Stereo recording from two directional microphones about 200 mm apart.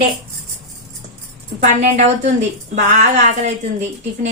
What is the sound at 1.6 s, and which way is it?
A woman's voice, 35° right (ahead or behind).